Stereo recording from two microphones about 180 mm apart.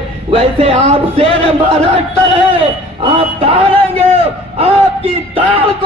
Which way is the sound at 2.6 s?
35° right (ahead or behind).